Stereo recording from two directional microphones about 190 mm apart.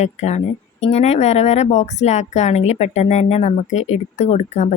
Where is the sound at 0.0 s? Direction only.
35° left (ahead or behind).